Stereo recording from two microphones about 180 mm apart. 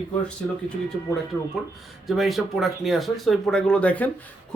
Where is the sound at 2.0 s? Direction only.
Centre (ahead or behind).